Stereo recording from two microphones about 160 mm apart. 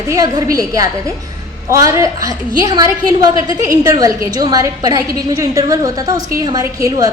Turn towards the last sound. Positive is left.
turn(degrees=-20)  # may be behind; listen again after turning